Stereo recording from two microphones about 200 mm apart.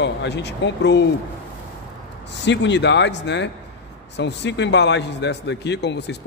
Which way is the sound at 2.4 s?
60° left (ahead or behind).